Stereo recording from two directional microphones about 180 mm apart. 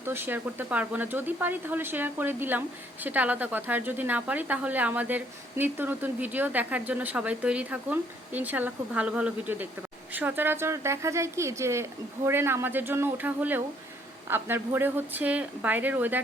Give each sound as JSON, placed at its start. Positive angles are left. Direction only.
{"t": 0.0, "sound": "speech", "side_deg": -10}